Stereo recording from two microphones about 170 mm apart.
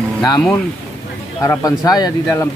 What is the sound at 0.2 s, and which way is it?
Speech, 20° left (ahead or behind).